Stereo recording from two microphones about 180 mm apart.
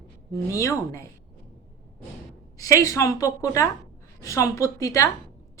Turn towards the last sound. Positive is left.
turn(degrees=15)  # may be behind; listen again after turning